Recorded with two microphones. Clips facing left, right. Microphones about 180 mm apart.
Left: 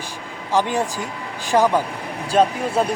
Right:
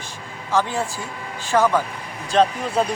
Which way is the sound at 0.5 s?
15° left (ahead or behind).